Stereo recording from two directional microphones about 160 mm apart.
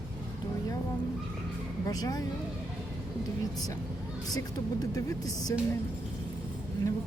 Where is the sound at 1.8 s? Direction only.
20° left (ahead or behind).